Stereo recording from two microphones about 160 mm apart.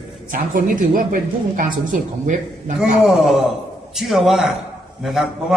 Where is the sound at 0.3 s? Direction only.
60° right (ahead or behind).